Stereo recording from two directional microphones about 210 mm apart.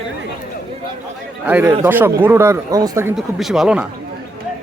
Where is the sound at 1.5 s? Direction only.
10° right (ahead or behind).